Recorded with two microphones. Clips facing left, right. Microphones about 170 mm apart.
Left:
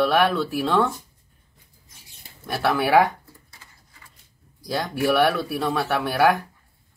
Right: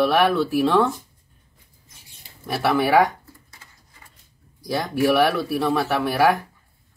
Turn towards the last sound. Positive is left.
turn(degrees=-5)  # may be behind; listen again after turning